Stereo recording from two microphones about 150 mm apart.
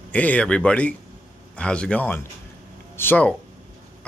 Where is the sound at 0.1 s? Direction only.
10° left (ahead or behind).